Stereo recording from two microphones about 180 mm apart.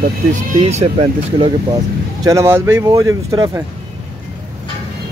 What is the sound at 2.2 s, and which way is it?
Speech, 15° right (ahead or behind).